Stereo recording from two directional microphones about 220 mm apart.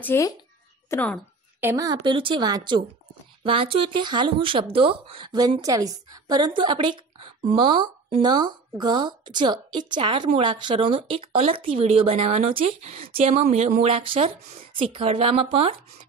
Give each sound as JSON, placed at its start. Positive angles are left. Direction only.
{"t": 0.0, "sound": "speech", "side_deg": 10}
{"t": 1.6, "sound": "a woman's voice", "side_deg": -15}